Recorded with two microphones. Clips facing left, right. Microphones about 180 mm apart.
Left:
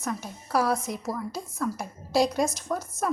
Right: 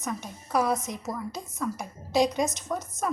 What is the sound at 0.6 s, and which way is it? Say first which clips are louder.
Speech: even; 20° right (ahead or behind).